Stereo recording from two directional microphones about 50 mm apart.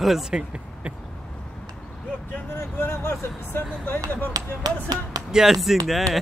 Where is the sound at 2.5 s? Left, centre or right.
Left.